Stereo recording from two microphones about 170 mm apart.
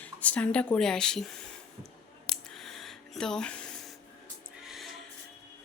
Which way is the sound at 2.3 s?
Centre (ahead or behind).